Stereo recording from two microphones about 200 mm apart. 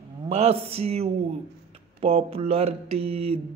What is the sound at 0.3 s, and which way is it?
Speech, 30° right (ahead or behind).